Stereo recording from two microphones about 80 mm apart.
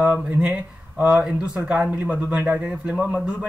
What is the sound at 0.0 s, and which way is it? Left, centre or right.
Speech, centre.